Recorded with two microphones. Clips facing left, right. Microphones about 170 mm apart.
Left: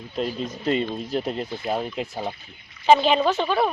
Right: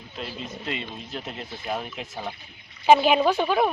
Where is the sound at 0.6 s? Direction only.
40° left (ahead or behind).